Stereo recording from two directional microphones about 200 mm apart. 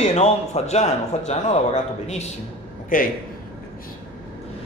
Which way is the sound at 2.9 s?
40° left (ahead or behind).